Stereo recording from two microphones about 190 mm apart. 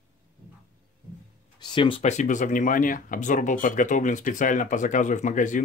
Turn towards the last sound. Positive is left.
turn(degrees=40)  # may be behind; listen again after turning